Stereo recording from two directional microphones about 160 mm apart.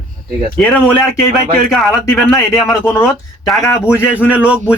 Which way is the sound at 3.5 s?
20° left (ahead or behind).